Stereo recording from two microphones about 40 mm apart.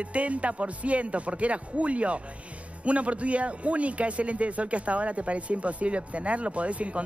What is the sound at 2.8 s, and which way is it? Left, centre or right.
A man's voice, right.